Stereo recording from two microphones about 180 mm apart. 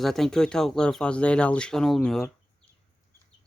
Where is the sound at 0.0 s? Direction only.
Centre (ahead or behind).